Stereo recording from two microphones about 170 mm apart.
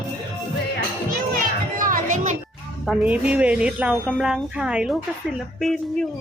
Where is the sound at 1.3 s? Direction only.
55° right (ahead or behind).